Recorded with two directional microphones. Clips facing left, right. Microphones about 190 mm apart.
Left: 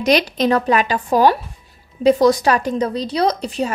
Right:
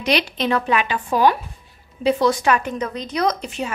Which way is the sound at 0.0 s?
40° left (ahead or behind).